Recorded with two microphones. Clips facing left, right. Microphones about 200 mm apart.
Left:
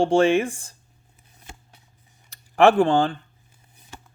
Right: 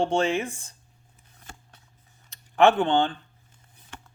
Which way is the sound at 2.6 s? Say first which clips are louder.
Left 3 dB; 30° left (ahead or behind).